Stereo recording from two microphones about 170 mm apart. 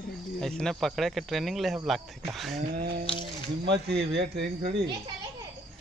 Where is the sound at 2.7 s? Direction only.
55° right (ahead or behind).